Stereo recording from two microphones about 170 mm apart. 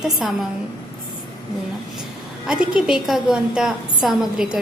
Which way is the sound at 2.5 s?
5° right (ahead or behind).